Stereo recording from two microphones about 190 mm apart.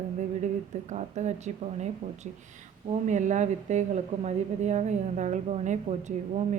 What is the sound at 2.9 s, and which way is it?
A woman's voice, 40° right (ahead or behind).